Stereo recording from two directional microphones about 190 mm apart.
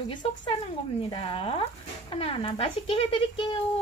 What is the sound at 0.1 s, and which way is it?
Speech, 25° left (ahead or behind).